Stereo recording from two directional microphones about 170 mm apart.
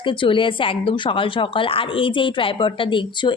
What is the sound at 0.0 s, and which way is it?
A woman's voice, 30° left (ahead or behind).